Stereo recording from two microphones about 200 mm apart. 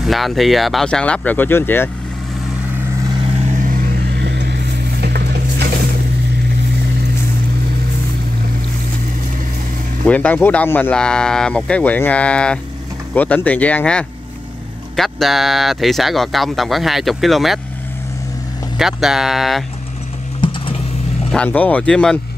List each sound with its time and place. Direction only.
0.0 s speech: centre (ahead or behind)
3.5 s vehicle: 45° right (ahead or behind)
5.0 s a sound: 55° right (ahead or behind)
10.0 s speech: 5° left (ahead or behind)
18.8 s speech: centre (ahead or behind)
20.3 s a sound: 25° left (ahead or behind)
21.3 s speech: 5° left (ahead or behind)